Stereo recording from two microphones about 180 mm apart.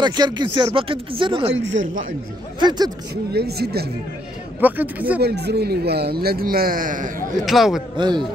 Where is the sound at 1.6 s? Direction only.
90° right.